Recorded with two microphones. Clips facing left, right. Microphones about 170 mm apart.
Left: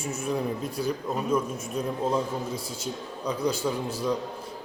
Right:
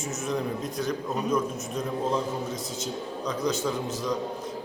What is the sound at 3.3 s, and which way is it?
Speech, 10° left (ahead or behind).